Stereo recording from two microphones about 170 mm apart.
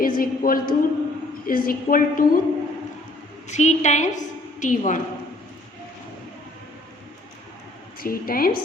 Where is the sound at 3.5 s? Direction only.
45° left (ahead or behind).